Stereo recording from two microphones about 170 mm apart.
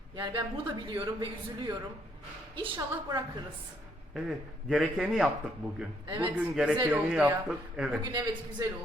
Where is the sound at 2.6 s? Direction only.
25° right (ahead or behind).